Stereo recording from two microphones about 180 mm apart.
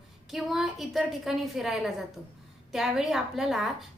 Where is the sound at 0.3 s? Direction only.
Centre (ahead or behind).